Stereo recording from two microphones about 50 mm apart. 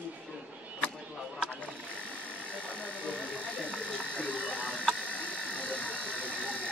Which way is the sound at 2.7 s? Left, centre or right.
Left.